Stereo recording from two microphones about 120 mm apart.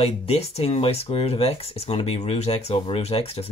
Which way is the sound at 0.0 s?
55° left (ahead or behind).